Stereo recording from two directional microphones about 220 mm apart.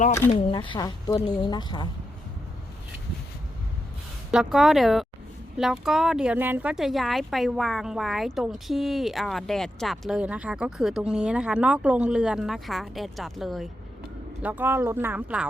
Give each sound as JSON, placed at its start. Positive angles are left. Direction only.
{"t": 0.3, "sound": "speech", "side_deg": 25}
{"t": 4.3, "sound": "speech", "side_deg": 0}